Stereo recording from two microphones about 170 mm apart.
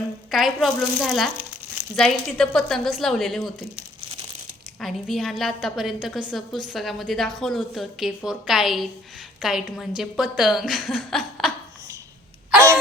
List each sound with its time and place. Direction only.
0.3 s a woman's voice: centre (ahead or behind)
4.8 s a woman's voice: centre (ahead or behind)